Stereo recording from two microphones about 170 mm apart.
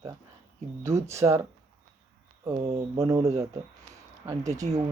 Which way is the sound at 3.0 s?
15° right (ahead or behind).